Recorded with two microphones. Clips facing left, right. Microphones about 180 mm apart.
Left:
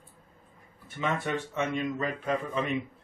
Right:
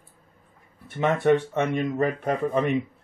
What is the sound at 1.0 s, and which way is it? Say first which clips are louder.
Speech: right 10 dB; 60° right (ahead or behind).